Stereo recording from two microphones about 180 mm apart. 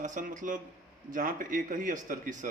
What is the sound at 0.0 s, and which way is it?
A man's voice, 45° right (ahead or behind).